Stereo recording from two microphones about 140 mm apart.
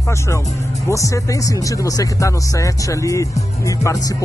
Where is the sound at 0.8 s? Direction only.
20° left (ahead or behind).